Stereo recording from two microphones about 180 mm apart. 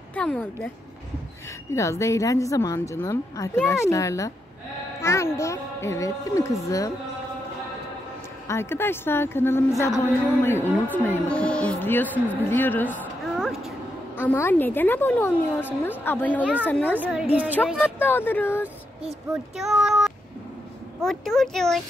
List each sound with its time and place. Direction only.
0.1 s a woman's voice: 5° left (ahead or behind)
1.7 s a woman's voice: 15° left (ahead or behind)
8.5 s a woman's voice: 15° left (ahead or behind)
13.4 s a sound: centre (ahead or behind)
14.1 s a woman's voice: 10° left (ahead or behind)
16.9 s a woman's voice: 5° right (ahead or behind)
17.9 s a woman's voice: 10° left (ahead or behind)
19.5 s speech: centre (ahead or behind)